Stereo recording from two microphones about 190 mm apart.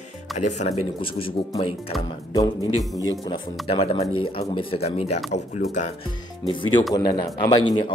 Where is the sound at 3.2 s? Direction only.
30° left (ahead or behind).